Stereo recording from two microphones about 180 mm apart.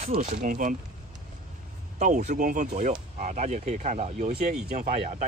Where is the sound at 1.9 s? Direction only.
40° right (ahead or behind).